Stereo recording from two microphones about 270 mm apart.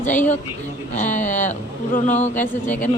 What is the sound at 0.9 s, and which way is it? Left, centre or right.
Speech, left.